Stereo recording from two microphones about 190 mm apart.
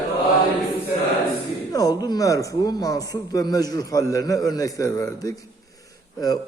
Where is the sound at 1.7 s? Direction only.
20° left (ahead or behind).